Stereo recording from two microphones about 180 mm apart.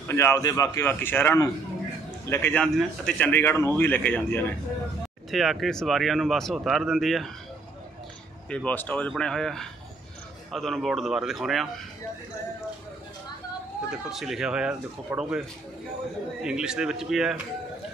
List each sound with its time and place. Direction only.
0.1 s speech: 15° left (ahead or behind)
8.5 s speech: 5° left (ahead or behind)
13.8 s speech: centre (ahead or behind)
16.4 s speech: 5° right (ahead or behind)